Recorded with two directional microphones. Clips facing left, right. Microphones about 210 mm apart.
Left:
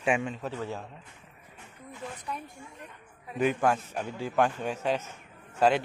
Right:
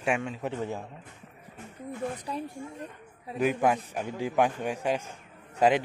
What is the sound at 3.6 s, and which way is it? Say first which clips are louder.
A man's voice: right 1 dB; 10° right (ahead or behind).